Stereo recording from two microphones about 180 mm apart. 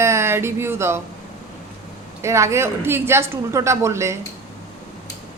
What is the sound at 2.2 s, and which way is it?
Speech, 15° right (ahead or behind).